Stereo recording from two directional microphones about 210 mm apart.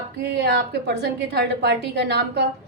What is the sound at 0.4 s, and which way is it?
A woman's voice, 50° right (ahead or behind).